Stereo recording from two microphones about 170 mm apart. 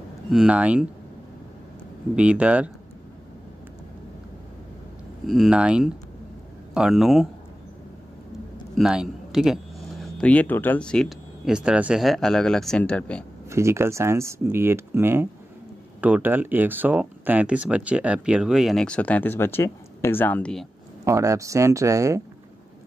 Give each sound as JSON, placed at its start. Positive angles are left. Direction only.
{"t": 0.3, "sound": "speech", "side_deg": -5}
{"t": 2.1, "sound": "speech", "side_deg": -5}
{"t": 5.2, "sound": "speech", "side_deg": 0}
{"t": 8.7, "sound": "a man's voice", "side_deg": -5}
{"t": 13.5, "sound": "speech", "side_deg": -15}
{"t": 21.0, "sound": "speech", "side_deg": -20}